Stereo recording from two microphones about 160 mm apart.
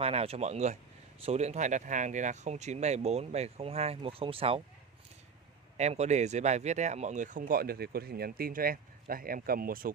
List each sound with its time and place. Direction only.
0.0 s speech: 40° right (ahead or behind)
5.8 s speech: 45° right (ahead or behind); by 9.9 s 65° right (ahead or behind)